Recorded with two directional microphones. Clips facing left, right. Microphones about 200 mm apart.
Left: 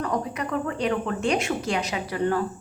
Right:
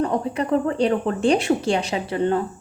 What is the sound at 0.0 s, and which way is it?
A woman's voice, 30° right (ahead or behind).